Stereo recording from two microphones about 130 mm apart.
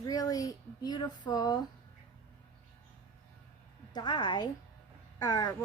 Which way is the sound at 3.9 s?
35° left (ahead or behind).